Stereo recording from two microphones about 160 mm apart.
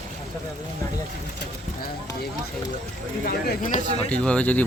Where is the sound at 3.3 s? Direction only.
55° left (ahead or behind).